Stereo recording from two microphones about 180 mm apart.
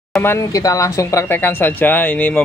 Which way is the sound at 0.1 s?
10° left (ahead or behind).